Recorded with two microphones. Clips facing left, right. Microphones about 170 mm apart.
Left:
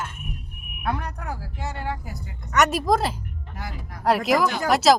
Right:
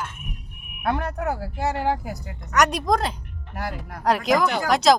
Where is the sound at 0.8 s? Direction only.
70° right (ahead or behind).